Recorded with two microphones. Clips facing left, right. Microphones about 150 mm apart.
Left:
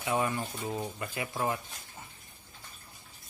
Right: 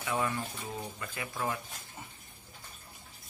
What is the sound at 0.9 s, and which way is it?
Speech, 20° left (ahead or behind).